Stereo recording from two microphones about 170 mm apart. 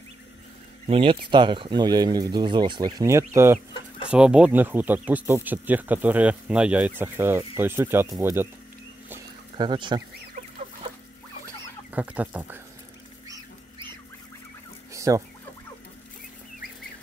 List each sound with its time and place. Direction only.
0.8 s speech: 30° right (ahead or behind); by 8.5 s 15° right (ahead or behind)
9.6 s speech: 25° right (ahead or behind)
11.9 s speech: 10° right (ahead or behind)
14.9 s fowl: 20° right (ahead or behind)